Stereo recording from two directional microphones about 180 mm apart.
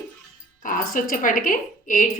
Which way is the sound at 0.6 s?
50° left (ahead or behind).